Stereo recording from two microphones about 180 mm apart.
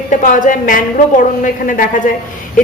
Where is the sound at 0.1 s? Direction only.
45° left (ahead or behind).